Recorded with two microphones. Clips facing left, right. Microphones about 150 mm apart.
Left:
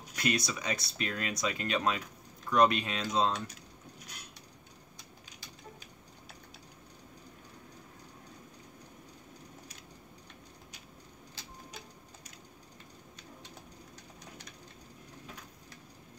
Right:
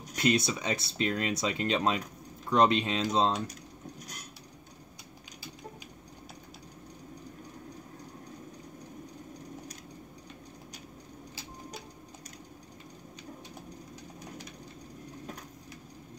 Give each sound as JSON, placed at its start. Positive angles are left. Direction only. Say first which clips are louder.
{"t": 0.1, "sound": "speech", "louder": "right 5 dB", "side_deg": -25}